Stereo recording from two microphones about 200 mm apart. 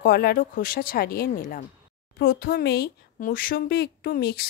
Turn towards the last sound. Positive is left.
turn(degrees=50)  # may be behind; listen again after turning